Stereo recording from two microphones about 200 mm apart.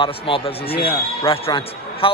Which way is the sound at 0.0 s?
25° left (ahead or behind).